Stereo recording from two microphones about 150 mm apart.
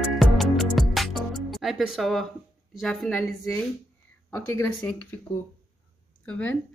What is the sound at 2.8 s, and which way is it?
A woman's voice, centre (ahead or behind).